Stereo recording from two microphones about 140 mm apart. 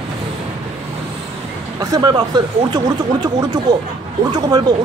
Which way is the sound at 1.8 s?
25° right (ahead or behind).